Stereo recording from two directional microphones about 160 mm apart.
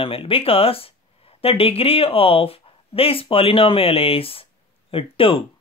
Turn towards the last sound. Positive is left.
turn(degrees=35)  # may be behind; listen again after turning